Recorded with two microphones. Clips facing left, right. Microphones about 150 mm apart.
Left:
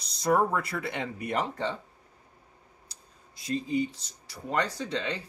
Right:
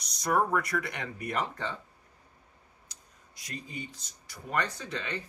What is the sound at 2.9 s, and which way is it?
Speech, 30° left (ahead or behind).